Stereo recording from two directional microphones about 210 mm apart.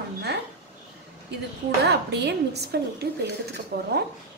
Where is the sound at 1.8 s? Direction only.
55° right (ahead or behind).